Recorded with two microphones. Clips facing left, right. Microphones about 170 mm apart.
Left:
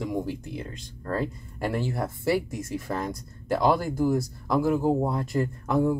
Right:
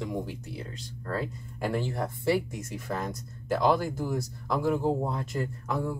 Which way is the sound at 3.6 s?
10° left (ahead or behind).